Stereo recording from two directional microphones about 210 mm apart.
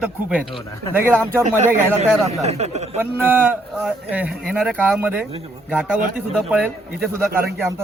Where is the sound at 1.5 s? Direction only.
35° right (ahead or behind).